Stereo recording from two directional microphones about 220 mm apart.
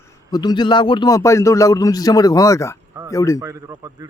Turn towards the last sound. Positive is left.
turn(degrees=-15)  # may be behind; listen again after turning